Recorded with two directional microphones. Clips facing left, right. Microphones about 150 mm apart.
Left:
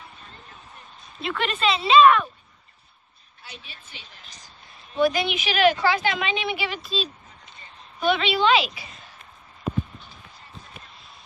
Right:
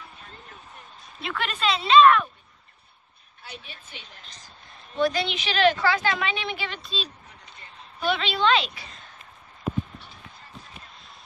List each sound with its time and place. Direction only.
1.2 s speech: centre (ahead or behind)
3.4 s a woman's voice: 55° right (ahead or behind)
4.9 s a woman's voice: 10° left (ahead or behind)